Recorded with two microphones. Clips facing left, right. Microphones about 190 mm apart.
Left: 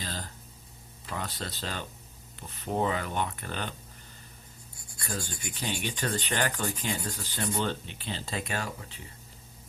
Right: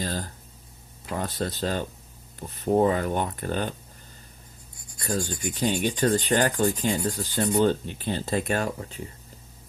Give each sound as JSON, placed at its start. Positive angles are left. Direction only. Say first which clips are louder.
{"t": 0.0, "sound": "a sound", "louder": "right 8 dB", "side_deg": -45}
{"t": 1.1, "sound": "speech", "louder": "right 7 dB", "side_deg": -45}
{"t": 5.2, "sound": "rub", "louder": "right 9 dB", "side_deg": -15}
{"t": 5.5, "sound": "speech", "louder": "right 9 dB", "side_deg": -45}
{"t": 6.2, "sound": "rub", "louder": "right 8 dB", "side_deg": -40}
{"t": 7.0, "sound": "speech", "louder": "right 8 dB", "side_deg": -45}